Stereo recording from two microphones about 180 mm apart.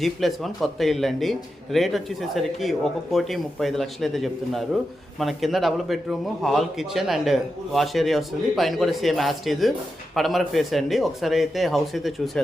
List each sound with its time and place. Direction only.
0.0 s speech: centre (ahead or behind)